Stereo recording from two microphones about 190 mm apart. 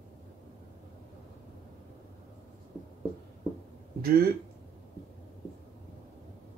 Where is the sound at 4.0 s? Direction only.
50° right (ahead or behind).